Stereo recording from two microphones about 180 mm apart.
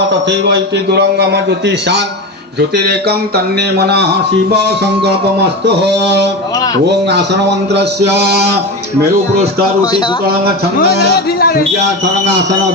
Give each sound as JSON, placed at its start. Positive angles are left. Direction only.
{"t": 0.1, "sound": "a man's voice", "side_deg": -75}
{"t": 5.8, "sound": "a man's voice", "side_deg": -70}
{"t": 9.8, "sound": "speech", "side_deg": 20}
{"t": 10.2, "sound": "speech", "side_deg": -60}
{"t": 10.8, "sound": "speech", "side_deg": 65}
{"t": 11.8, "sound": "a man's voice", "side_deg": -75}